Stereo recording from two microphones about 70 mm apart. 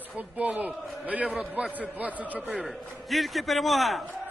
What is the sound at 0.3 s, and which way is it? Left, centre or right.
A man's voice, right.